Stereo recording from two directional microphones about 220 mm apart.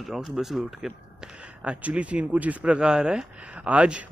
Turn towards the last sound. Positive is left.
turn(degrees=-5)  # may be behind; listen again after turning